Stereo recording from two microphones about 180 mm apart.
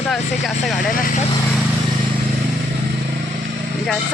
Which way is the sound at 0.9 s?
50° left (ahead or behind).